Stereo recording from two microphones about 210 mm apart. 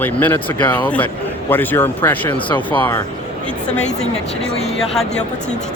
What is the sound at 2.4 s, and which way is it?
Speech, 25° left (ahead or behind).